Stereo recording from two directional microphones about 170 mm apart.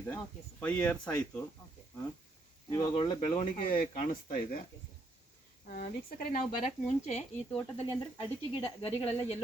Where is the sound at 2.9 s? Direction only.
30° left (ahead or behind).